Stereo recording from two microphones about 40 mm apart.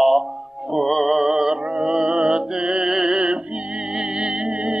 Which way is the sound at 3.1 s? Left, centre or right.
Right.